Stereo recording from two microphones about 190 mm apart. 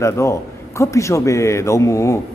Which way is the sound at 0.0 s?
15° left (ahead or behind).